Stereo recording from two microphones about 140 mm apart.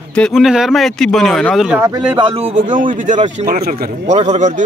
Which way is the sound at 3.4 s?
90° right.